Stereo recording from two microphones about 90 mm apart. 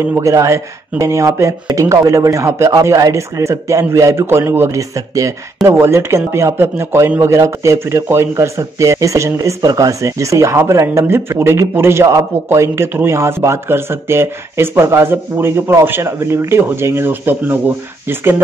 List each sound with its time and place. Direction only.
0.0 s speech: 30° right (ahead or behind)